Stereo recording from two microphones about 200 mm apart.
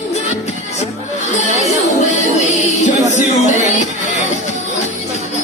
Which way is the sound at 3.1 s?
35° left (ahead or behind).